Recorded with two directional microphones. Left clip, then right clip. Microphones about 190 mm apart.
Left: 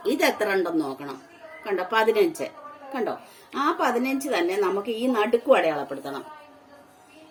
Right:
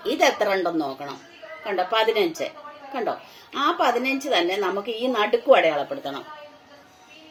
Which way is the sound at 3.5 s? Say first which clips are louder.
Right 2 dB; 40° left (ahead or behind).